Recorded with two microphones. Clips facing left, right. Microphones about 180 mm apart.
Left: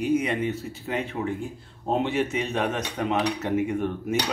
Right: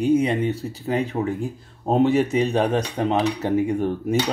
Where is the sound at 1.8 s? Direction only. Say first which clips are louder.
Right 6 dB; 40° right (ahead or behind).